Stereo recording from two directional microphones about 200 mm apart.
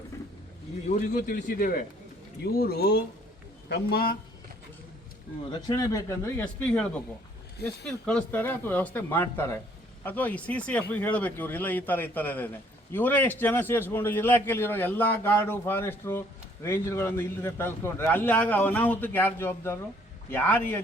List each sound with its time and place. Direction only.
0.9 s a man's voice: 40° left (ahead or behind)
5.5 s a man's voice: 20° left (ahead or behind)
8.0 s a man's voice: 10° left (ahead or behind)